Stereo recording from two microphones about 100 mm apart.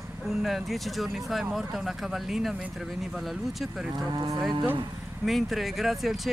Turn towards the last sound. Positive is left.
turn(degrees=0)  # may be behind; listen again after turning